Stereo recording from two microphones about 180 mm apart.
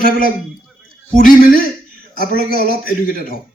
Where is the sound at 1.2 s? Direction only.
50° left (ahead or behind).